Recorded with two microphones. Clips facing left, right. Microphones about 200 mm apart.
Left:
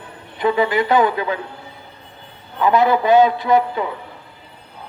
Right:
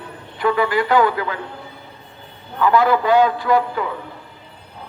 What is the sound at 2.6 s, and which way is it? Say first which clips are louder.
A man's voice: left 1 dB; 20° left (ahead or behind).